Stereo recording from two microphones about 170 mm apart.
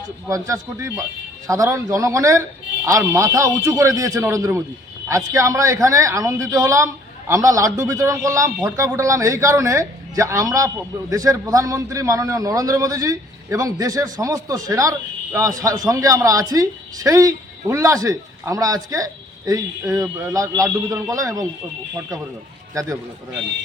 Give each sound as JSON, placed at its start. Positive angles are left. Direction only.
{"t": 0.3, "sound": "a man's voice", "side_deg": -20}
{"t": 22.7, "sound": "a man's voice", "side_deg": -20}